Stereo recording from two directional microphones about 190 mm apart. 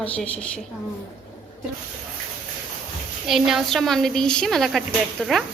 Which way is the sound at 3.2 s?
Centre (ahead or behind).